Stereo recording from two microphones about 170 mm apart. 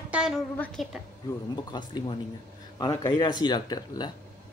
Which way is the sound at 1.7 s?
25° left (ahead or behind).